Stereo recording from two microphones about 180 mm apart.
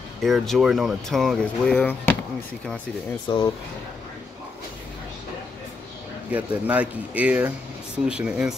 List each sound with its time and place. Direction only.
0.2 s speech: centre (ahead or behind)
3.3 s speech: 25° left (ahead or behind)
6.3 s speech: 10° right (ahead or behind)